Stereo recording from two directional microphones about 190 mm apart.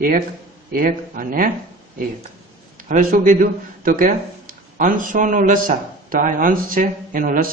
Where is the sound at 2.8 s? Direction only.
45° right (ahead or behind).